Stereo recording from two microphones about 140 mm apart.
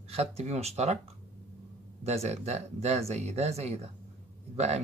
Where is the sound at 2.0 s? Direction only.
50° right (ahead or behind).